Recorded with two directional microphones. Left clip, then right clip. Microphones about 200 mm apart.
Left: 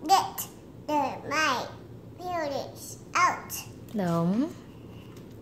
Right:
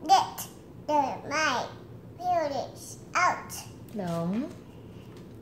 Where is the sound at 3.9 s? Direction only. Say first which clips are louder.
Left 4 dB; 45° left (ahead or behind).